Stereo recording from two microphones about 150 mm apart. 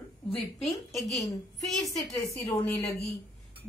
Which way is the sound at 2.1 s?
15° left (ahead or behind).